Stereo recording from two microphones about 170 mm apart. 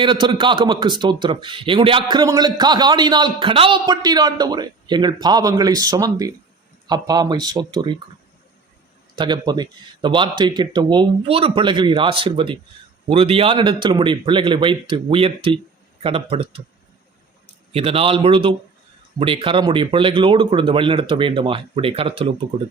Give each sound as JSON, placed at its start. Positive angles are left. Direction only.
{"t": 0.0, "sound": "a man's voice", "side_deg": -30}
{"t": 9.1, "sound": "a man's voice", "side_deg": -25}
{"t": 17.7, "sound": "speech", "side_deg": -35}